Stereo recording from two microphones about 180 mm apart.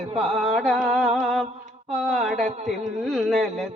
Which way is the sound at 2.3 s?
40° right (ahead or behind).